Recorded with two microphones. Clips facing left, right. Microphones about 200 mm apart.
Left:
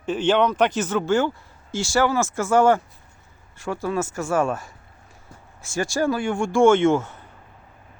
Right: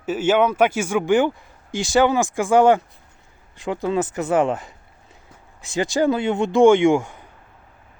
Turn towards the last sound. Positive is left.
turn(degrees=-15)  # may be behind; listen again after turning